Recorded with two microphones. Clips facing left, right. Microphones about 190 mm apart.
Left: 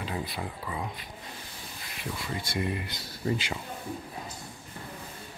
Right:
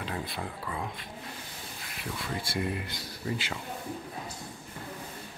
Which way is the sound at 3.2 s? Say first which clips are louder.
Left 4 dB; 40° left (ahead or behind).